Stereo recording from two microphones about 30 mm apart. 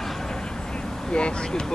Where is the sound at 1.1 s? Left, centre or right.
Left.